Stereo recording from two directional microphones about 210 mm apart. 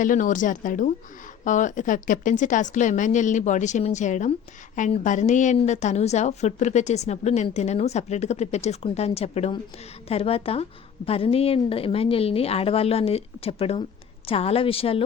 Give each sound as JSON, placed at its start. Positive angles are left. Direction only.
{"t": 0.0, "sound": "a woman's voice", "side_deg": 40}